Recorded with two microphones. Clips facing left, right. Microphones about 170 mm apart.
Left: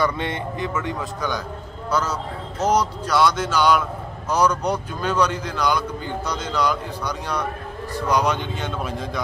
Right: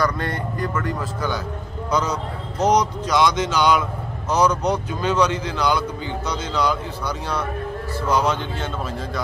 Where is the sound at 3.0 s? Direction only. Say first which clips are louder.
Left 1 dB; 15° right (ahead or behind).